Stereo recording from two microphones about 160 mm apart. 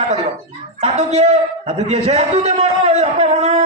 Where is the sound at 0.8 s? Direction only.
40° right (ahead or behind).